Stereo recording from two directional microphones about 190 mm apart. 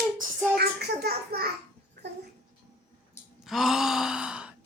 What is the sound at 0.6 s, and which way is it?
Speech, 60° right (ahead or behind).